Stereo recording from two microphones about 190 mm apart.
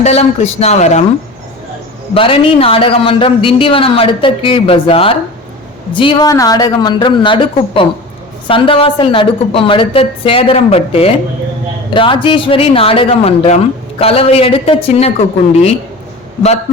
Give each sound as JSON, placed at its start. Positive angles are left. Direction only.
{"t": 0.0, "sound": "a woman's voice", "side_deg": 35}
{"t": 2.1, "sound": "a man's voice", "side_deg": 30}